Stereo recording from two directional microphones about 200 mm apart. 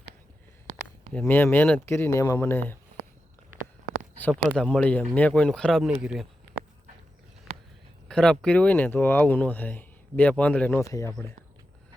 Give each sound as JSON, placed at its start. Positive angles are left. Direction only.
{"t": 0.7, "sound": "a sound", "side_deg": -35}
{"t": 1.1, "sound": "speech", "side_deg": 10}
{"t": 4.2, "sound": "speech", "side_deg": 5}
{"t": 8.0, "sound": "speech", "side_deg": 5}